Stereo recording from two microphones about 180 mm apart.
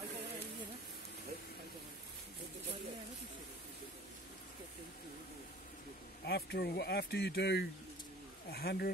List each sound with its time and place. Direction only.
6.2 s speech: 65° left (ahead or behind)